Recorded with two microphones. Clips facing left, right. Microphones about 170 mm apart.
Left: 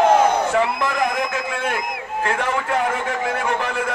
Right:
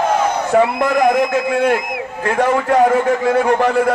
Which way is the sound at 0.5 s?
50° right (ahead or behind).